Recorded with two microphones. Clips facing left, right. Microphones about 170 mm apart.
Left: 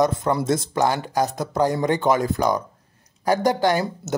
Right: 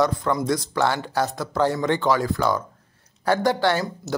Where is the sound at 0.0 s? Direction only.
20° left (ahead or behind).